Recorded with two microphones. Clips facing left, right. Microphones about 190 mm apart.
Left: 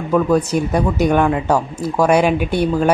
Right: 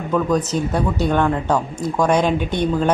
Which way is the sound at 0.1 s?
10° left (ahead or behind).